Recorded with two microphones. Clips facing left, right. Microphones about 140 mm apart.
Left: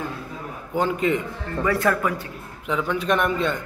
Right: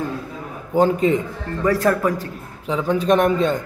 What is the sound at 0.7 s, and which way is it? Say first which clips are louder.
A man's voice: right 6 dB; 35° right (ahead or behind).